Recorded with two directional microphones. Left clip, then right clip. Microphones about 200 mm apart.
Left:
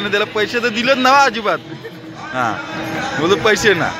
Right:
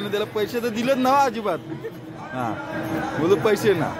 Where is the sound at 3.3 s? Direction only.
Centre (ahead or behind).